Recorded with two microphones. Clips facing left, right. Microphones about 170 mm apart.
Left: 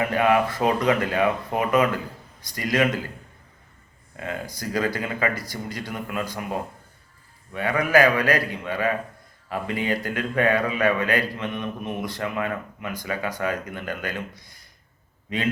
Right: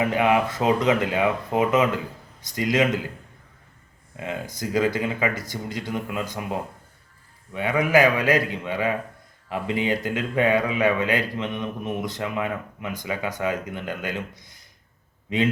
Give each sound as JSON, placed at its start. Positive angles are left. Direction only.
{"t": 0.0, "sound": "a man's voice", "side_deg": -15}
{"t": 4.2, "sound": "a man's voice", "side_deg": -20}
{"t": 7.5, "sound": "a man's voice", "side_deg": -20}